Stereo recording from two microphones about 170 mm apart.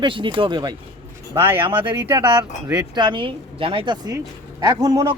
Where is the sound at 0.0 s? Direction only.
30° right (ahead or behind).